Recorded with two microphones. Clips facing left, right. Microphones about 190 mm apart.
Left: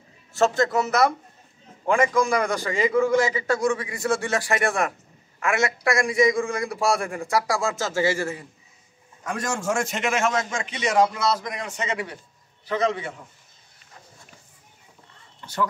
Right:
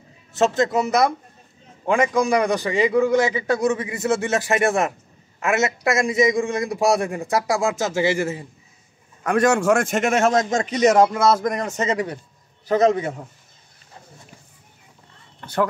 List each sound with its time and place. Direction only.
0.3 s a man's voice: 20° right (ahead or behind)
9.2 s a man's voice: 65° right (ahead or behind); by 13.3 s 40° right (ahead or behind)
15.4 s a sound: 60° right (ahead or behind)